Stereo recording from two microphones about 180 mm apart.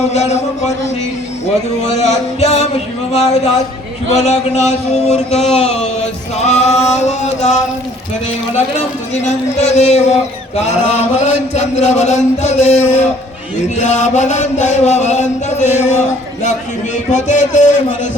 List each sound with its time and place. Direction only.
0.1 s chant: 40° left (ahead or behind)
1.9 s chant: 40° left (ahead or behind)
9.1 s chant: 40° left (ahead or behind)